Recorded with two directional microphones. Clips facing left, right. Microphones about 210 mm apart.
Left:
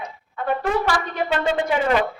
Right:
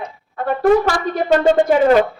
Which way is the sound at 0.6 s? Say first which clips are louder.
Right 11 dB; 45° right (ahead or behind).